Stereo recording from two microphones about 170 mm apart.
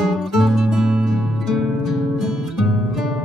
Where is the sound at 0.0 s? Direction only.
Centre (ahead or behind).